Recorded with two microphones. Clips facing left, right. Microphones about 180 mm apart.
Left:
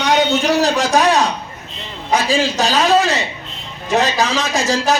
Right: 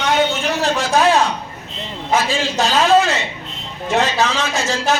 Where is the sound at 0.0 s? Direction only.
40° left (ahead or behind).